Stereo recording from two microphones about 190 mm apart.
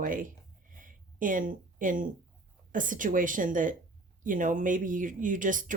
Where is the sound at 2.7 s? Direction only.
45° right (ahead or behind).